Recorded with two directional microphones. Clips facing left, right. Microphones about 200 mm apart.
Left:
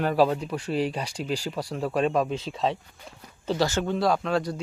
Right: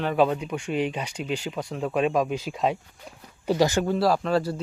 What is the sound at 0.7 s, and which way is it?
Speech, 35° left (ahead or behind).